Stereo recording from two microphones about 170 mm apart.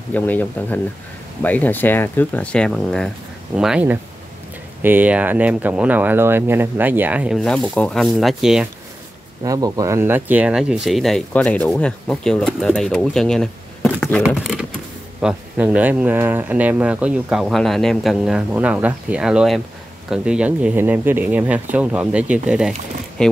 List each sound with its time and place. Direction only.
0.1 s speech: 10° left (ahead or behind); by 7.3 s 10° right (ahead or behind)
7.3 s speech: 5° left (ahead or behind)
9.4 s speech: 20° right (ahead or behind); by 14.2 s 10° left (ahead or behind)
14.2 s a sound: 5° right (ahead or behind)
15.2 s speech: 10° right (ahead or behind)